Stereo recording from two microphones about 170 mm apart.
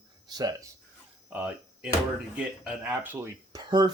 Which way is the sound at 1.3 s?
10° right (ahead or behind).